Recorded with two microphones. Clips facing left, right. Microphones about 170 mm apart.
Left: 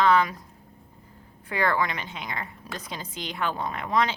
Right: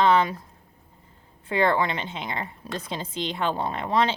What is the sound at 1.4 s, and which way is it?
A woman's voice, 25° right (ahead or behind).